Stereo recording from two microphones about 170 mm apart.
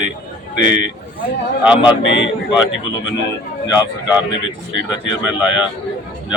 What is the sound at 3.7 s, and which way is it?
Speech, 10° right (ahead or behind).